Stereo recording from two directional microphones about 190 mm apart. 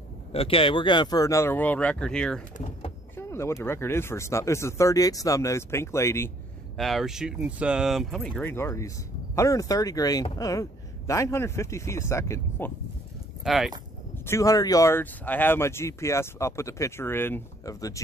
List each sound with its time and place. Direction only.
0.3 s speech: 30° left (ahead or behind); by 6.3 s 15° left (ahead or behind)
6.8 s speech: centre (ahead or behind)
13.4 s speech: centre (ahead or behind)
14.1 s speech: 15° left (ahead or behind)